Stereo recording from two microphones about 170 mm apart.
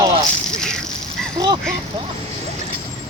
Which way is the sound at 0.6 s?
5° left (ahead or behind).